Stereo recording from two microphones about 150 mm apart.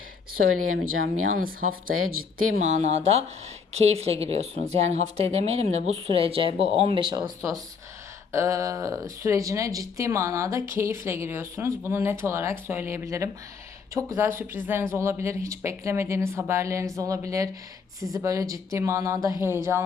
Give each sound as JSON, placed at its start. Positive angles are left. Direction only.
{"t": 0.9, "sound": "speech", "side_deg": -70}
{"t": 2.6, "sound": "speech", "side_deg": -55}
{"t": 8.3, "sound": "speech", "side_deg": -20}